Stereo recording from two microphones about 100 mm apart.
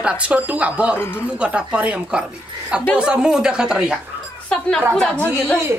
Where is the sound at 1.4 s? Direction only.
10° right (ahead or behind).